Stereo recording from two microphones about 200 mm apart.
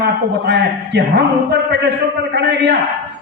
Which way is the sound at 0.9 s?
55° right (ahead or behind).